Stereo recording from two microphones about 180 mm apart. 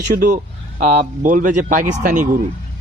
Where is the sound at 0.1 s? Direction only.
45° right (ahead or behind).